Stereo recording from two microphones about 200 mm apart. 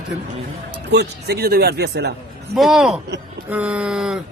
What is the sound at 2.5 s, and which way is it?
A man's voice, centre (ahead or behind).